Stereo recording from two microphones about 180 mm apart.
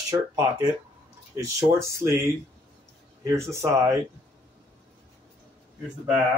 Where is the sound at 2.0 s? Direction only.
15° right (ahead or behind).